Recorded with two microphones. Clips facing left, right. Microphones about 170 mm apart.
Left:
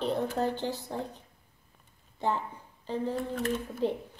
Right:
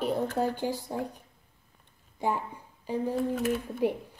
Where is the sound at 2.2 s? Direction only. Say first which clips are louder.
Right 1 dB; 10° right (ahead or behind).